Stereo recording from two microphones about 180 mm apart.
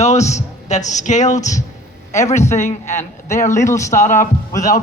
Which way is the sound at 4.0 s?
45° left (ahead or behind).